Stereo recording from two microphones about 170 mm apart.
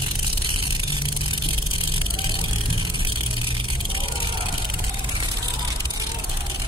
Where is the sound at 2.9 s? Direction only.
30° right (ahead or behind).